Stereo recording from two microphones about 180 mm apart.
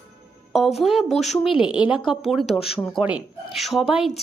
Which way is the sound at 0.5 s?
Centre (ahead or behind).